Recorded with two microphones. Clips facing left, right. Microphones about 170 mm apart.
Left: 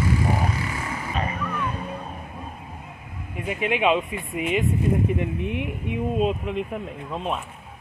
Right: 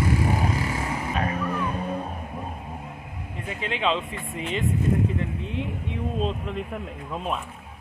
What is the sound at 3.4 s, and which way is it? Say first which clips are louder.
Speech: left 5 dB; 15° left (ahead or behind).